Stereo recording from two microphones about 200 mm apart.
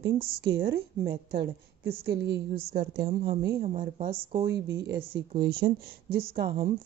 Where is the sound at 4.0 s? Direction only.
25° right (ahead or behind).